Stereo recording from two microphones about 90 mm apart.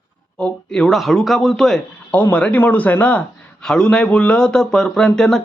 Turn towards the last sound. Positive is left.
turn(degrees=5)  # may be behind; listen again after turning